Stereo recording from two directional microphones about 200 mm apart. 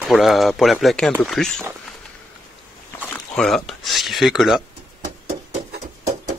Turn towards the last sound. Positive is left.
turn(degrees=-30)  # may be behind; listen again after turning